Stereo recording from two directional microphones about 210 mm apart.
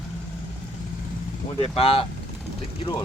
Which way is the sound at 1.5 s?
25° left (ahead or behind).